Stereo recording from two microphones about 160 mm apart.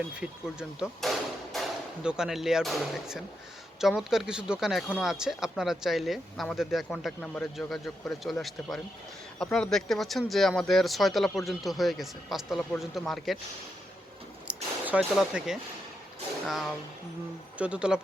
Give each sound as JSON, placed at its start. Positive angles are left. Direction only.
{"t": 1.0, "sound": "speech", "side_deg": 0}
{"t": 14.4, "sound": "a sound", "side_deg": -5}
{"t": 16.5, "sound": "speech", "side_deg": 0}